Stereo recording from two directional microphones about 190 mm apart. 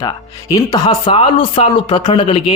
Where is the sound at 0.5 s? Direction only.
20° left (ahead or behind).